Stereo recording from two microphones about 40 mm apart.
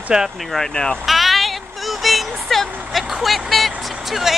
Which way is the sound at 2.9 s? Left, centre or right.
Centre.